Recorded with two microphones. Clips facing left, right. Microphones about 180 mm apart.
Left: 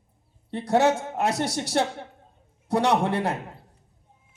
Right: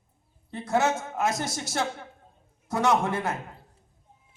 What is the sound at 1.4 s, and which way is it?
Speech, 65° left (ahead or behind).